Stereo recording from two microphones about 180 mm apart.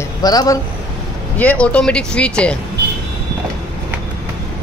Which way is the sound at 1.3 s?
5° left (ahead or behind).